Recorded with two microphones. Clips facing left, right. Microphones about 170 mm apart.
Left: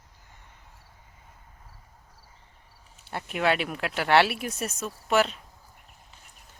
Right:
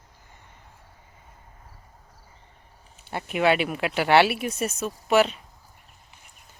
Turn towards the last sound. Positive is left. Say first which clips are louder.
# right 4 dB
turn(degrees=0)  # may be behind; listen again after turning